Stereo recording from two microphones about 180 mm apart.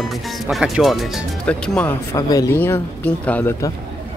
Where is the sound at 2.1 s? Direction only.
20° left (ahead or behind).